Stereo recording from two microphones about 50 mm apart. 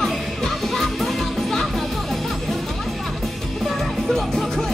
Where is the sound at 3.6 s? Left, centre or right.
Centre.